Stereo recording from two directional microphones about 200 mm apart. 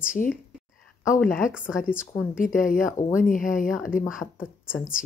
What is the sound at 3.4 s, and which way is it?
Speech, centre (ahead or behind).